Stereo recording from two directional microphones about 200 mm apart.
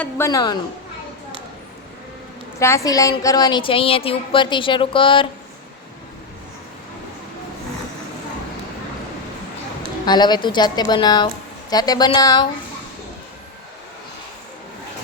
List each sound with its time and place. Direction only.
0.0 s a woman's voice: 15° left (ahead or behind)
2.6 s a woman's voice: 15° left (ahead or behind)
10.1 s a woman's voice: 20° left (ahead or behind)